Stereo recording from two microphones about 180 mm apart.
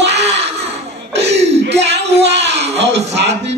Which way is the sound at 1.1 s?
75° right (ahead or behind).